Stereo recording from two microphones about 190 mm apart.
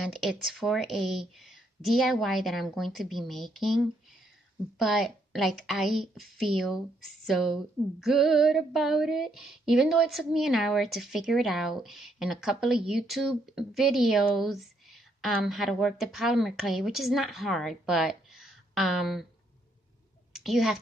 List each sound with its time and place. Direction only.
0.0 s female singing: centre (ahead or behind)
20.3 s a woman's voice: centre (ahead or behind)